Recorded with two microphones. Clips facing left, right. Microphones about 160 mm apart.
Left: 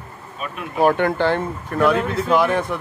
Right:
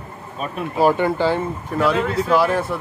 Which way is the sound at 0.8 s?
5° right (ahead or behind).